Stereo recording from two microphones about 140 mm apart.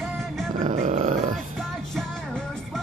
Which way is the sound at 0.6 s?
60° right (ahead or behind).